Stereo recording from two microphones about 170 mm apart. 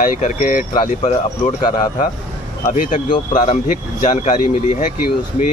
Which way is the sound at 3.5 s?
50° left (ahead or behind).